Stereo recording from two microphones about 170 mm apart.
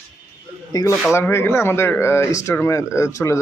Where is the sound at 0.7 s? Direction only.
20° left (ahead or behind).